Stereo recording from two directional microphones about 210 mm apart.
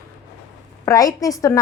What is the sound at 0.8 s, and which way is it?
Speech, 15° left (ahead or behind).